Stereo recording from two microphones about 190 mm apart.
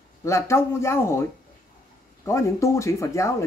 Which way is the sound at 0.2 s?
15° left (ahead or behind).